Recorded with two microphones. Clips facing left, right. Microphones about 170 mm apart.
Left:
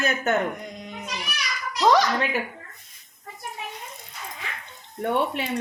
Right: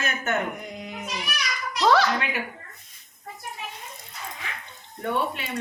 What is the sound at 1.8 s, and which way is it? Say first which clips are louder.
Speech: left 1 dB; 15° left (ahead or behind).